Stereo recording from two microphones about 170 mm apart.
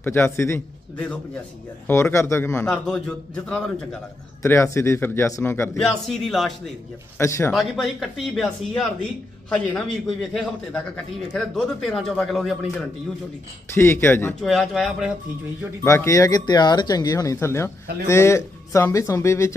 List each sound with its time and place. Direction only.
0.0 s a man's voice: 15° left (ahead or behind)
4.4 s speech: 15° left (ahead or behind)
5.9 s speech: centre (ahead or behind)
7.2 s speech: 15° left (ahead or behind)
7.5 s speech: centre (ahead or behind)
13.7 s speech: 15° left (ahead or behind)
14.4 s speech: centre (ahead or behind)
15.8 s speech: 15° left (ahead or behind)